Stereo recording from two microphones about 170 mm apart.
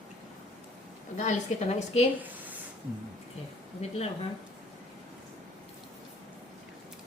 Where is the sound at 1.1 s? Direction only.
45° left (ahead or behind).